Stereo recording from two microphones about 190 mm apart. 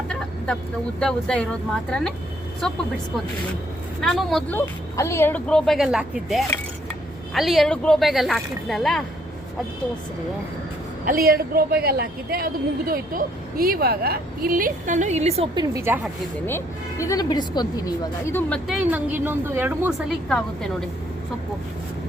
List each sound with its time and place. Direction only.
0.9 s speech: 5° left (ahead or behind)
4.0 s speech: centre (ahead or behind)
11.0 s a woman's voice: 50° right (ahead or behind); by 15.6 s 35° right (ahead or behind)
15.6 s a woman's voice: 15° right (ahead or behind)
16.5 s speech: 15° left (ahead or behind)
18.8 s a woman's voice: 10° right (ahead or behind)